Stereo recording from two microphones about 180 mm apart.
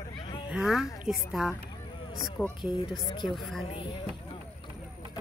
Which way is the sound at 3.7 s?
30° left (ahead or behind).